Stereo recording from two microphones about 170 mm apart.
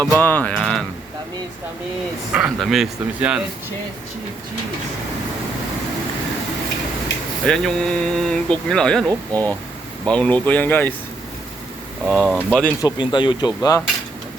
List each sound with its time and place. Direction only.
0.0 s speech: 10° left (ahead or behind)
0.5 s a sound: centre (ahead or behind)
2.3 s speech: 5° right (ahead or behind)
7.4 s speech: 5° left (ahead or behind)
12.0 s speech: 5° right (ahead or behind)
12.4 s speech: 10° left (ahead or behind)
12.8 s speech: 25° left (ahead or behind)